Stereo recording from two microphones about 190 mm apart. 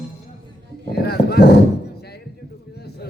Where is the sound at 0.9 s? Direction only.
60° left (ahead or behind).